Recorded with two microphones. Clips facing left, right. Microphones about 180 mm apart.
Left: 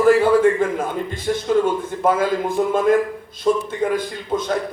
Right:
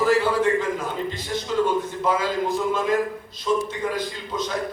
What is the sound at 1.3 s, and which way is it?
A man's voice, 55° left (ahead or behind).